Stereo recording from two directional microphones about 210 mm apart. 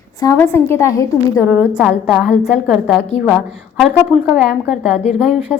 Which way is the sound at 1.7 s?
5° right (ahead or behind).